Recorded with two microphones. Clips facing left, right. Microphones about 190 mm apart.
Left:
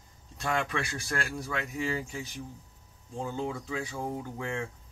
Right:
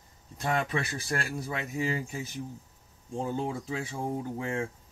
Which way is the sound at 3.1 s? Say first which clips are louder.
Right 2 dB; 25° right (ahead or behind).